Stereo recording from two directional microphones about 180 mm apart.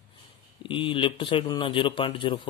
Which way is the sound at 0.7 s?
30° left (ahead or behind).